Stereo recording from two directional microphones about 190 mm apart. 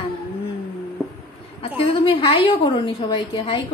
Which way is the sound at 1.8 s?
25° left (ahead or behind).